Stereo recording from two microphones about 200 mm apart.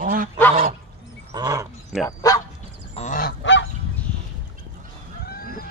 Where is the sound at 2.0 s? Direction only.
20° left (ahead or behind).